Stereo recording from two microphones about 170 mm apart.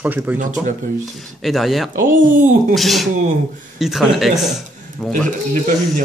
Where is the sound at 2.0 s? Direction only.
50° right (ahead or behind).